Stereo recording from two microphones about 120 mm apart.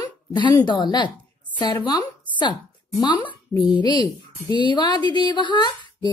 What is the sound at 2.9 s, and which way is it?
Speech, 40° left (ahead or behind).